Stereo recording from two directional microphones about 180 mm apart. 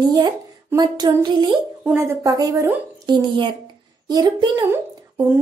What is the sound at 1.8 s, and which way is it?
Speech, 10° right (ahead or behind).